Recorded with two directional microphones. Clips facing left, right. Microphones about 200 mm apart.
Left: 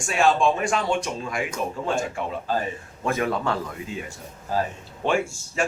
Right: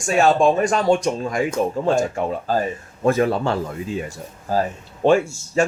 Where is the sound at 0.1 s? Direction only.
40° right (ahead or behind).